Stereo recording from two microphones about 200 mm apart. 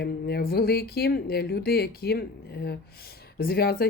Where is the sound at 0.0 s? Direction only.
55° left (ahead or behind).